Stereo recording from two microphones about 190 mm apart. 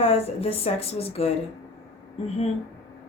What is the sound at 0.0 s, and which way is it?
Speech, 30° left (ahead or behind).